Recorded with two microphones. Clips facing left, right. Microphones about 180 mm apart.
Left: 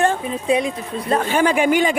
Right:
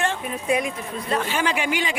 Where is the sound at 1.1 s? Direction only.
50° left (ahead or behind).